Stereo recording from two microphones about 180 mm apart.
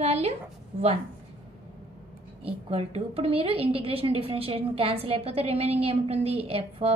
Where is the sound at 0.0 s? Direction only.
35° right (ahead or behind).